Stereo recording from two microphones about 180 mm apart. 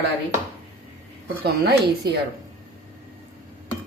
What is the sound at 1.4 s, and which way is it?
Speech, 65° right (ahead or behind).